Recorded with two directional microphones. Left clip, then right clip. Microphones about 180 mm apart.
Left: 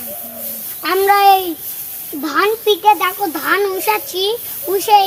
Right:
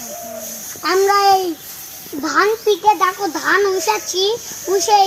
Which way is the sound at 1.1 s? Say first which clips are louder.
Left 4 dB; 5° left (ahead or behind).